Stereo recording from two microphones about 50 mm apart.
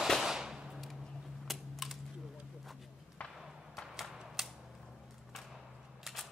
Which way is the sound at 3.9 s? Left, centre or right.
Centre.